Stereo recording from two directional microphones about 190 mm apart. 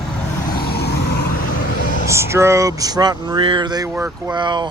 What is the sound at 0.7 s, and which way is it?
Vehicle, 55° left (ahead or behind).